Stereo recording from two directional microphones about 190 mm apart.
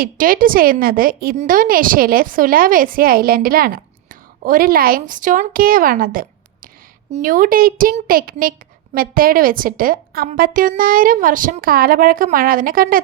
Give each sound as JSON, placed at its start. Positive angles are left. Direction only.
{"t": 0.0, "sound": "a woman's voice", "side_deg": -50}